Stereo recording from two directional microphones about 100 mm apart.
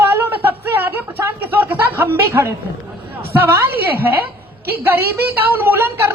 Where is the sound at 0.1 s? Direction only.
20° right (ahead or behind).